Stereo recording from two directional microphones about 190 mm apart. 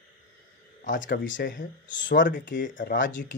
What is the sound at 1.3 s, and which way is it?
Speech, 45° left (ahead or behind).